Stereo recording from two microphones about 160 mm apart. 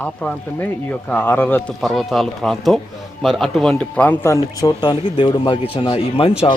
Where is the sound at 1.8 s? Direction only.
Centre (ahead or behind); by 4.7 s 15° left (ahead or behind).